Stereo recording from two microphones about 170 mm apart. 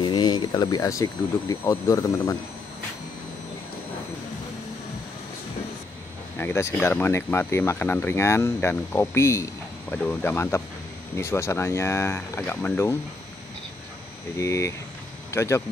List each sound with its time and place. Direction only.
0.0 s a sound: 25° left (ahead or behind)
1.5 s speech: 20° left (ahead or behind)
6.3 s speech: 15° left (ahead or behind)
14.4 s speech: 15° left (ahead or behind)